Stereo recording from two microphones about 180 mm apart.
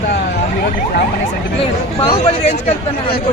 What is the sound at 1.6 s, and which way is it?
Speech, 30° left (ahead or behind).